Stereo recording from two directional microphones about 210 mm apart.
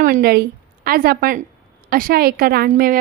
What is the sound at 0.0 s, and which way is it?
A woman's voice, 45° right (ahead or behind).